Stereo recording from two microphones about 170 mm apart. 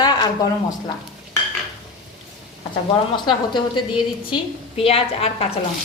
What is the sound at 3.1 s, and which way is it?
A woman's voice, 25° left (ahead or behind).